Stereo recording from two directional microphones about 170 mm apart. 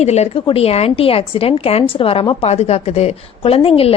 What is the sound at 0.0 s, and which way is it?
A woman's voice, 40° left (ahead or behind).